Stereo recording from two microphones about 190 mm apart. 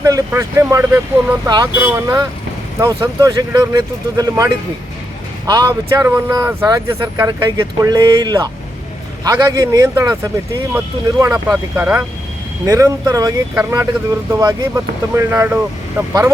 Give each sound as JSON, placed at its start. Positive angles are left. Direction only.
{"t": 0.0, "sound": "speech", "side_deg": -15}